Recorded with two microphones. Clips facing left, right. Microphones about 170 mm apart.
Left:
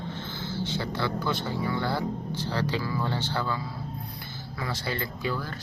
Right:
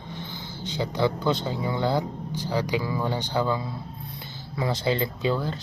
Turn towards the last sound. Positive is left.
turn(degrees=-20)  # may be behind; listen again after turning